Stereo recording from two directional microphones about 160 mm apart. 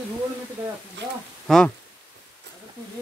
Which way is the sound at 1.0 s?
90° right.